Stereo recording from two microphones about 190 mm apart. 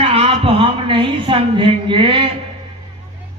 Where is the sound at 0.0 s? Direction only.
30° right (ahead or behind).